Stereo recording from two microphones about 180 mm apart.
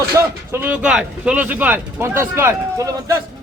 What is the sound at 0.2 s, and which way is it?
A man's voice, 10° right (ahead or behind).